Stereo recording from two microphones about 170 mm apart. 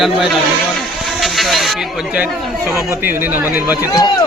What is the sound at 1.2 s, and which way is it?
Hiss, centre (ahead or behind).